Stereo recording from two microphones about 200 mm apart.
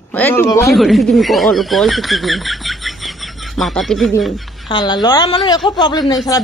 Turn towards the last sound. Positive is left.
turn(degrees=20)  # may be behind; listen again after turning